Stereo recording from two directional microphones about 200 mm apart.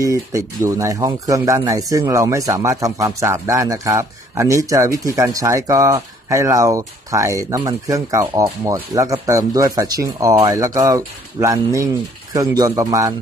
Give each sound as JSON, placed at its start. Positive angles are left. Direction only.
{"t": 0.3, "sound": "a man's voice", "side_deg": -15}